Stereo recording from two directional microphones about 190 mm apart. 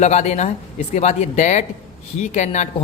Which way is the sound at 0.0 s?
35° left (ahead or behind).